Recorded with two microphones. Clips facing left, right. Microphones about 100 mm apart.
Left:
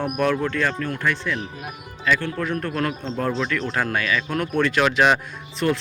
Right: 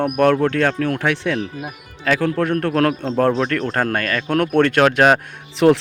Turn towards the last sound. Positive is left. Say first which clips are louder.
# right 9 dB
turn(degrees=-90)